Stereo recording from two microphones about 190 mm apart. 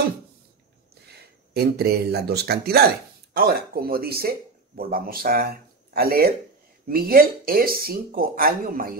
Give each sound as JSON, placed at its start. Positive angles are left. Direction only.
{"t": 1.5, "sound": "speech", "side_deg": -55}